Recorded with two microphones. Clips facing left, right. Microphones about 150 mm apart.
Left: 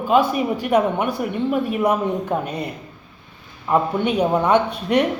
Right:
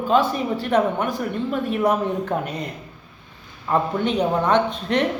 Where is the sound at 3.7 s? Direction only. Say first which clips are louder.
Left 2 dB; 10° left (ahead or behind).